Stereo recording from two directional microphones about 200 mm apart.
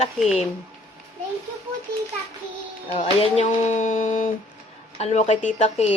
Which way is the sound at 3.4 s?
40° left (ahead or behind).